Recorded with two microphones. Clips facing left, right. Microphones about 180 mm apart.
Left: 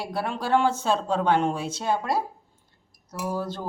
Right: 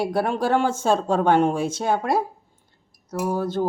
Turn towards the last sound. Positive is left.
turn(degrees=-50)  # may be behind; listen again after turning